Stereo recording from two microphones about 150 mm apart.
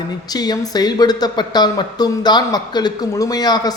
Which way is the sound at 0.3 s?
25° left (ahead or behind).